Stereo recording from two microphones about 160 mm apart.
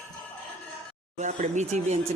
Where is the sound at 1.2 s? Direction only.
45° right (ahead or behind).